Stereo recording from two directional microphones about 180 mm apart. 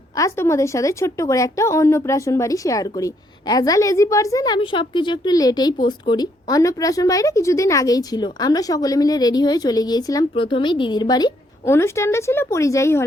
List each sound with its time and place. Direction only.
0.2 s a woman's voice: 15° left (ahead or behind)